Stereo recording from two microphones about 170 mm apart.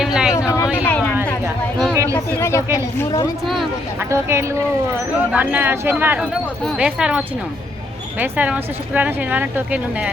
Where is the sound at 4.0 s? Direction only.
15° right (ahead or behind).